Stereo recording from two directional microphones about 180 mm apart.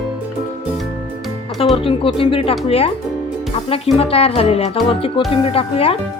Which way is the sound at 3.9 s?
35° left (ahead or behind).